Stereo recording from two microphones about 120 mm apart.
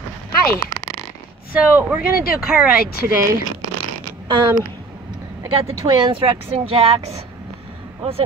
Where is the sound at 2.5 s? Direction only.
10° right (ahead or behind).